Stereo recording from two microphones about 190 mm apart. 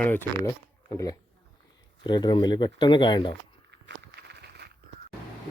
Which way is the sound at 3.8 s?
65° right (ahead or behind).